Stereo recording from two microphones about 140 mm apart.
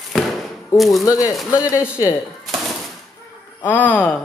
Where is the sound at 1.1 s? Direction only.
25° left (ahead or behind).